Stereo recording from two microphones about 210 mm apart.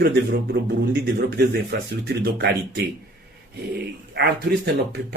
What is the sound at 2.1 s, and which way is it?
Speech, 50° right (ahead or behind).